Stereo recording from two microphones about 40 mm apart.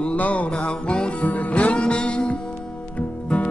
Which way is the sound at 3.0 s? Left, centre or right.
Left.